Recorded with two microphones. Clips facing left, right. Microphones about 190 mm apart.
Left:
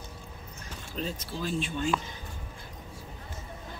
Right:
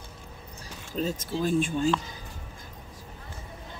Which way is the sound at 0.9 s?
45° right (ahead or behind).